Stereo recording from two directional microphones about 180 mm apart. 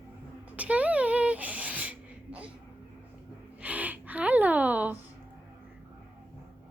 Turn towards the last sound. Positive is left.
turn(degrees=-10)  # may be behind; listen again after turning